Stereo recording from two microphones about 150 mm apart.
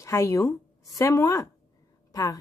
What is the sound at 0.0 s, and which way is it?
A woman's voice, 20° left (ahead or behind).